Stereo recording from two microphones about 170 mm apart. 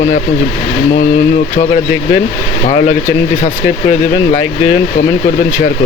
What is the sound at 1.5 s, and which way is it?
Speech, 50° left (ahead or behind).